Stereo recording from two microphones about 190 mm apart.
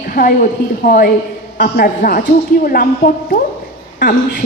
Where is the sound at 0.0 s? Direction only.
50° left (ahead or behind).